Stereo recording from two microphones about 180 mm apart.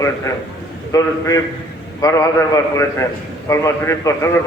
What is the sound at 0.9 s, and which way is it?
A man's voice, 20° left (ahead or behind).